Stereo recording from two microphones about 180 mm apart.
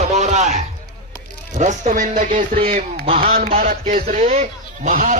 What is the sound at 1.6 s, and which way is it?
A man's voice, 45° right (ahead or behind).